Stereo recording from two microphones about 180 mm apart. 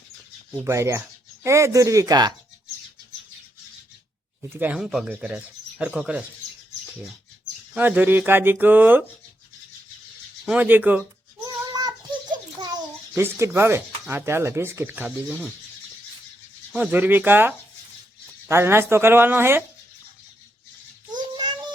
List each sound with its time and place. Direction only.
0.6 s speech: 15° right (ahead or behind)
4.4 s speech: 10° right (ahead or behind)
6.8 s bird: centre (ahead or behind)
7.7 s speech: 10° right (ahead or behind)
10.4 s speech: 10° right (ahead or behind)
11.4 s child singing: 20° right (ahead or behind)
13.1 s speech: 15° right (ahead or behind)
16.7 s speech: 10° right (ahead or behind)
21.1 s child singing: 25° right (ahead or behind)